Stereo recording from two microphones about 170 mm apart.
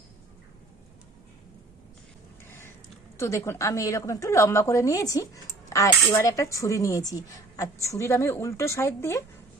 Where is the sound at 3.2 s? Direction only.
15° left (ahead or behind).